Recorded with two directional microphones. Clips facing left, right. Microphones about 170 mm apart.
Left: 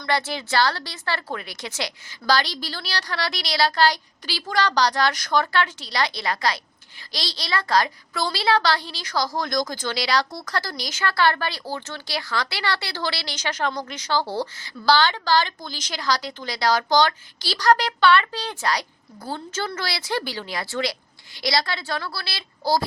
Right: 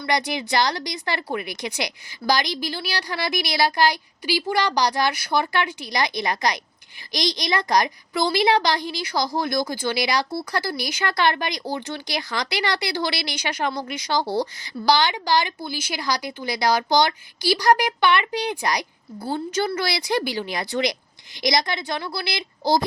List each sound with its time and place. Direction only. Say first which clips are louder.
0.0 s a child's voice: right 1 dB; 15° right (ahead or behind)